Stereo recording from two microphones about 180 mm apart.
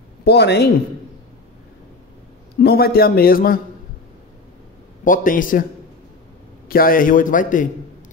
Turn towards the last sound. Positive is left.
turn(degrees=45)  # may be behind; listen again after turning